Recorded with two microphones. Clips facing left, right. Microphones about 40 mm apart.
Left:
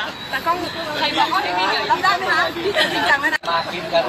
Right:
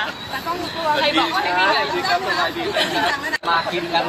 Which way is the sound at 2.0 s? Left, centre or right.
Left.